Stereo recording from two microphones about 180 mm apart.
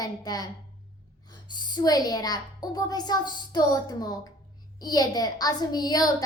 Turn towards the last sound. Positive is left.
turn(degrees=20)  # may be behind; listen again after turning